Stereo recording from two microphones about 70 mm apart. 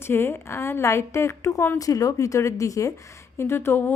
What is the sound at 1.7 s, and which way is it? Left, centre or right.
Speech, left.